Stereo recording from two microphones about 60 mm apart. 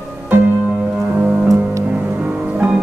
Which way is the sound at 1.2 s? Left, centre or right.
Right.